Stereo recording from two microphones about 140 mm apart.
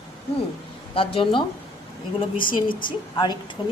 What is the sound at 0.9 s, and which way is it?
Speech, 40° left (ahead or behind).